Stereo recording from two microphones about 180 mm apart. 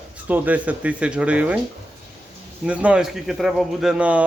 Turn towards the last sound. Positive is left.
turn(degrees=-5)  # may be behind; listen again after turning